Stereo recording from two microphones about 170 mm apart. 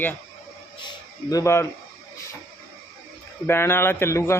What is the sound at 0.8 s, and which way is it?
Speech, 25° left (ahead or behind).